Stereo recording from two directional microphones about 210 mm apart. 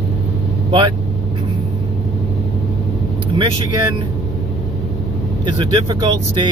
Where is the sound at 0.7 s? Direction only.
20° right (ahead or behind).